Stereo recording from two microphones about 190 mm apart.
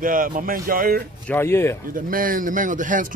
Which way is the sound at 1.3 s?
15° left (ahead or behind).